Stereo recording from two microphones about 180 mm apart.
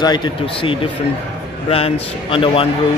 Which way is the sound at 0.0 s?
25° left (ahead or behind).